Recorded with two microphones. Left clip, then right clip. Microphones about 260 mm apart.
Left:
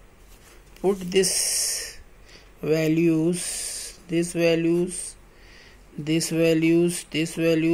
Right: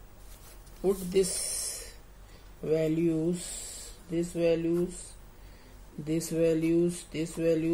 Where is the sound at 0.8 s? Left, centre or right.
Left.